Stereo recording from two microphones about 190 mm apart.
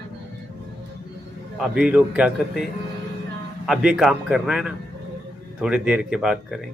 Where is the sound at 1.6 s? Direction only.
5° right (ahead or behind).